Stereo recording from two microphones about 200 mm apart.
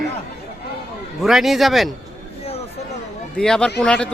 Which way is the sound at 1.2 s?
Centre (ahead or behind).